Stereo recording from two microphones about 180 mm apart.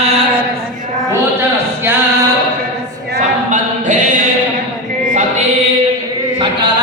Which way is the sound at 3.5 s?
45° right (ahead or behind).